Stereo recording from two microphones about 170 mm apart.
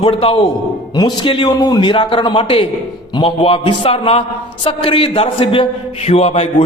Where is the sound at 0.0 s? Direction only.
30° left (ahead or behind).